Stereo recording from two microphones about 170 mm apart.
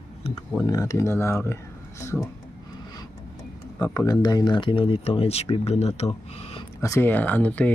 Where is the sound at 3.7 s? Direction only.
20° left (ahead or behind); by 6.0 s 40° left (ahead or behind).